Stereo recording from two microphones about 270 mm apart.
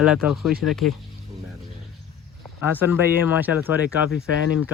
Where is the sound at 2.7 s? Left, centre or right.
Centre.